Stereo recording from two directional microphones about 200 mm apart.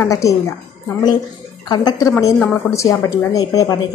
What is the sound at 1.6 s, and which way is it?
A woman's voice, 20° left (ahead or behind).